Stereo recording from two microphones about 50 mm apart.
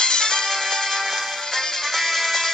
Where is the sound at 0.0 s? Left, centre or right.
Centre.